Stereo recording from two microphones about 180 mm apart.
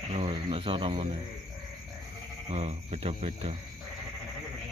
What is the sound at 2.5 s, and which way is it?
Speech, 35° right (ahead or behind).